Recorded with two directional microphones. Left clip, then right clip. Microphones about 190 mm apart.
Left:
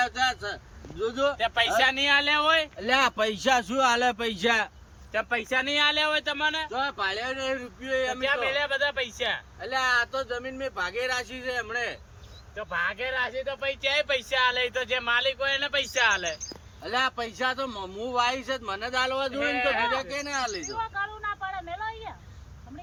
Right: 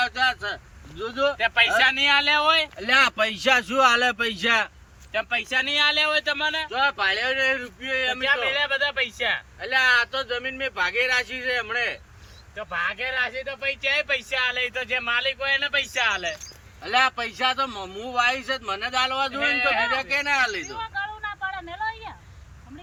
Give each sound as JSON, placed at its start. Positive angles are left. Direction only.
{"t": 0.0, "sound": "a sound", "side_deg": -5}
{"t": 1.0, "sound": "speech", "side_deg": 0}
{"t": 5.1, "sound": "speech", "side_deg": 20}
{"t": 6.7, "sound": "speech", "side_deg": 0}
{"t": 16.8, "sound": "speech", "side_deg": 0}
{"t": 20.7, "sound": "a sound", "side_deg": 20}